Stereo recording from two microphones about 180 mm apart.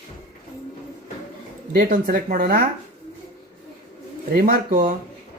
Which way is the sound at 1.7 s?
50° right (ahead or behind).